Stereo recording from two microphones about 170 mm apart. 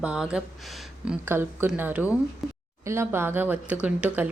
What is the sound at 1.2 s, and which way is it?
Speech, 10° right (ahead or behind).